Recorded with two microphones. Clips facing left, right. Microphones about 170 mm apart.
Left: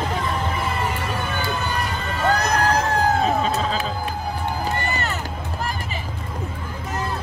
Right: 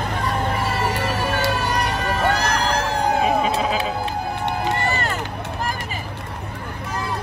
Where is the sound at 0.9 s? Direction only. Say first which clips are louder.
Right 4 dB; 70° right (ahead or behind).